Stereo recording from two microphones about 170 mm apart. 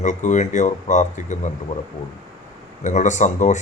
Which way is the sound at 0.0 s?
45° left (ahead or behind).